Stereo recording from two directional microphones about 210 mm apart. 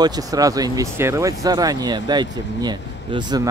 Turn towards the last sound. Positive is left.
turn(degrees=-20)  # may be behind; listen again after turning